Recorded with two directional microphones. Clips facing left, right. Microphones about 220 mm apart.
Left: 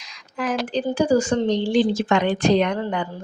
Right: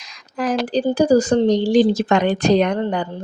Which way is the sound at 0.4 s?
35° right (ahead or behind).